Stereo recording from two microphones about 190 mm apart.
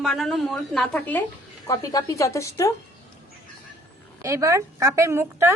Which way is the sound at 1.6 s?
20° left (ahead or behind).